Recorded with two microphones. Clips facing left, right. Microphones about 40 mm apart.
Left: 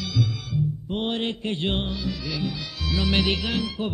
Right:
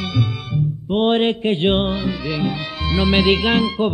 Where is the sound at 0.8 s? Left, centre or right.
Right.